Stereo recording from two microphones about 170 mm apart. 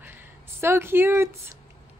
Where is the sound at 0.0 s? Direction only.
10° right (ahead or behind).